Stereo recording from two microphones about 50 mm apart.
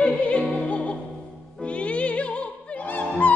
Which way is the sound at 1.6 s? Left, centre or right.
Left.